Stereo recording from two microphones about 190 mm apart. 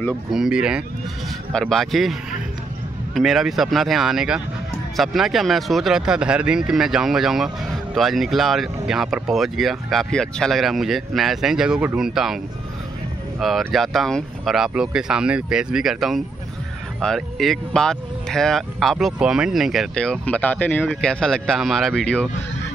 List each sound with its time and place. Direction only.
0.3 s speech: 5° right (ahead or behind)
3.2 s speech: centre (ahead or behind)
13.4 s speech: centre (ahead or behind)